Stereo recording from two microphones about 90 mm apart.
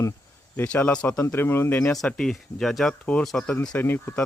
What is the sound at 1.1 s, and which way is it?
Speech, 25° left (ahead or behind).